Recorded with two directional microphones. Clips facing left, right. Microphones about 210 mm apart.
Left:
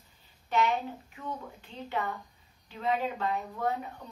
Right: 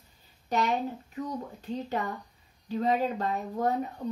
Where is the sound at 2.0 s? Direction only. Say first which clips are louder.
Right 1 dB; 40° right (ahead or behind).